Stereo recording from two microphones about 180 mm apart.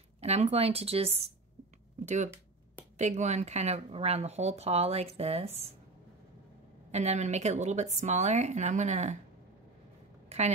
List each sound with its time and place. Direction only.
0.2 s speech: 35° right (ahead or behind)
6.9 s speech: 40° right (ahead or behind)
10.3 s a sound: 35° right (ahead or behind)